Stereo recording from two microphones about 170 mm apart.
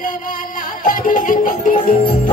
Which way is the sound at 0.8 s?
50° left (ahead or behind).